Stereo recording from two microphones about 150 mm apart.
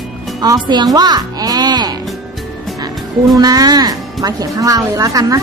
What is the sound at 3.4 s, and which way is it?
A woman's voice, 25° right (ahead or behind).